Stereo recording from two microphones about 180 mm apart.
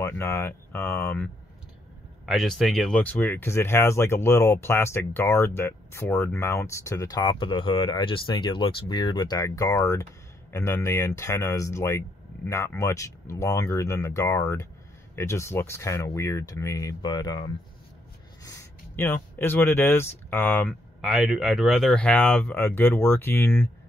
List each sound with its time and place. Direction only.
0.0 s speech: 15° left (ahead or behind)
2.2 s speech: centre (ahead or behind)
21.0 s speech: centre (ahead or behind)